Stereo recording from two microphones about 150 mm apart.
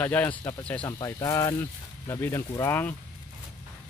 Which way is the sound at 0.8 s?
20° left (ahead or behind).